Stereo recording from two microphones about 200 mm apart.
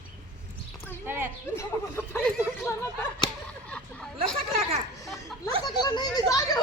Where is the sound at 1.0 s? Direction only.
10° right (ahead or behind).